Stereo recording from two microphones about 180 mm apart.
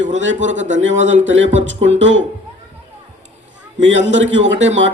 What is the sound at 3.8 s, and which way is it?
Speech, 90° right.